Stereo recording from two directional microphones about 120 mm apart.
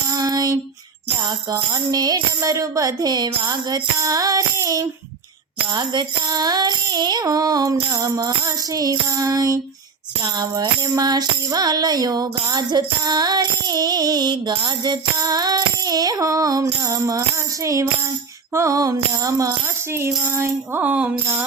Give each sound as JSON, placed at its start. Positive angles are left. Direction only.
{"t": 0.1, "sound": "female singing", "side_deg": -30}
{"t": 1.7, "sound": "music", "side_deg": -30}
{"t": 5.7, "sound": "music", "side_deg": -40}
{"t": 16.8, "sound": "speech", "side_deg": -30}